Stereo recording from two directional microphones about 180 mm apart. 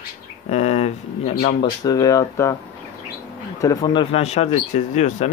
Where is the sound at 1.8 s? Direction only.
20° left (ahead or behind).